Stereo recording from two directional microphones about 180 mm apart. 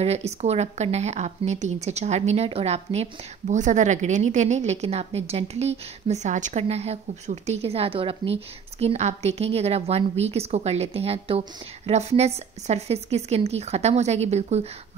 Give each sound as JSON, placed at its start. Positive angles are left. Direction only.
{"t": 0.0, "sound": "a woman's voice", "side_deg": -35}